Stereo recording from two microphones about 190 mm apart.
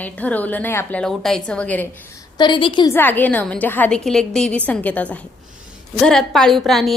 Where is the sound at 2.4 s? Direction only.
25° left (ahead or behind).